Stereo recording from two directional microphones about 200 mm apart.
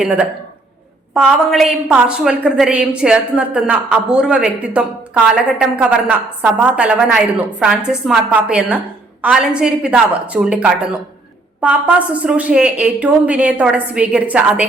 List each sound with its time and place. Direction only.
1.1 s a woman's voice: centre (ahead or behind)